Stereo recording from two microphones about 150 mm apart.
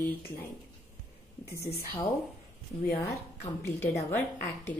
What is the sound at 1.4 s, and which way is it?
Speech, 20° left (ahead or behind).